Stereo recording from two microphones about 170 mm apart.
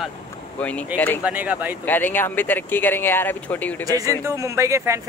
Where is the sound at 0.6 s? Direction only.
10° left (ahead or behind).